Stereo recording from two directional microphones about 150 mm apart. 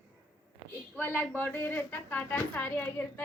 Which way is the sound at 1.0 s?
10° left (ahead or behind).